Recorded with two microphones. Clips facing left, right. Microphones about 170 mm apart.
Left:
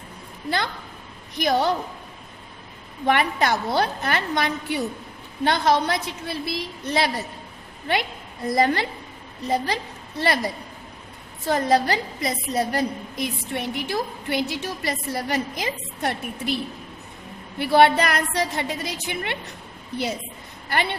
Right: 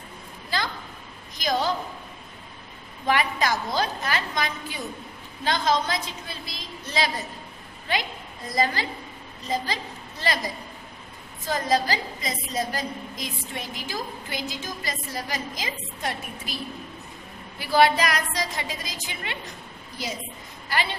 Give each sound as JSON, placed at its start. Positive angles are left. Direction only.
{"t": 1.4, "sound": "a woman's voice", "side_deg": 60}
{"t": 3.1, "sound": "a woman's voice", "side_deg": 60}
{"t": 8.4, "sound": "a woman's voice", "side_deg": 60}
{"t": 17.6, "sound": "a woman's voice", "side_deg": 60}